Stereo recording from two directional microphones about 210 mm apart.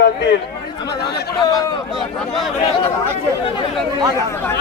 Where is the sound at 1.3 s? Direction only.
15° left (ahead or behind).